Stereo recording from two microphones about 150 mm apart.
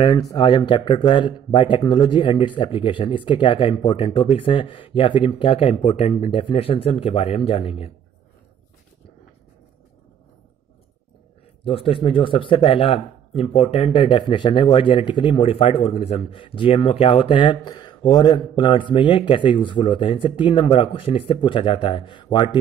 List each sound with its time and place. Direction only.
0.0 s speech: 30° left (ahead or behind)
11.6 s speech: 40° left (ahead or behind)